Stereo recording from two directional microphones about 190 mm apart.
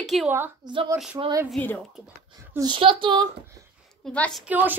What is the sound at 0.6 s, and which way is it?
Speech, 25° right (ahead or behind).